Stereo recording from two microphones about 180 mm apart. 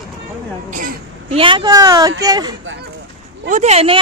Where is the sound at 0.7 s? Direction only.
50° right (ahead or behind).